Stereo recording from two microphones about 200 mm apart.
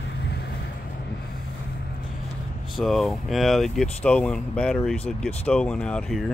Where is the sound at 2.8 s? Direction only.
Centre (ahead or behind).